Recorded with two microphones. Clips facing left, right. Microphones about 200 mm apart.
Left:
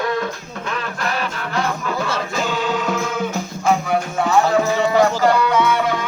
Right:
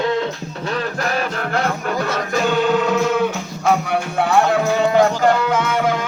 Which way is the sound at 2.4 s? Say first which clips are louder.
Right 6 dB; 60° right (ahead or behind).